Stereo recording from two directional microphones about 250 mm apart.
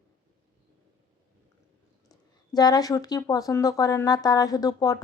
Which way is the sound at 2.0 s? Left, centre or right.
Centre.